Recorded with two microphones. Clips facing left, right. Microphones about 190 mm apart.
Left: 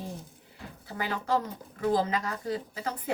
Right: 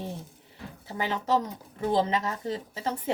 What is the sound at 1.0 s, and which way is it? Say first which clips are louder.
Speech: right 2 dB; 20° right (ahead or behind).